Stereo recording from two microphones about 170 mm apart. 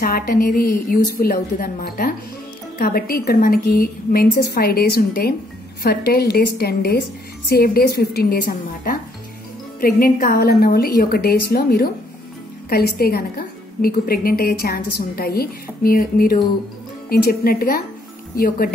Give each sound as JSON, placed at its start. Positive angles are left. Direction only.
{"t": 0.0, "sound": "a woman's voice", "side_deg": 55}